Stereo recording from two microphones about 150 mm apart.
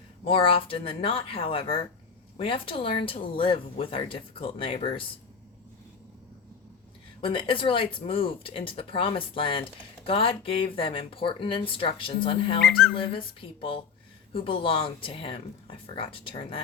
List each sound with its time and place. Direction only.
0.3 s speech: 35° left (ahead or behind)
7.2 s speech: 35° left (ahead or behind)
12.6 s speech: 5° left (ahead or behind)
12.9 s speech: 35° left (ahead or behind)